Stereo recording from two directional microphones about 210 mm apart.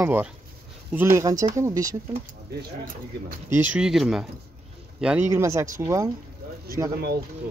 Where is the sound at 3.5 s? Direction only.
10° right (ahead or behind).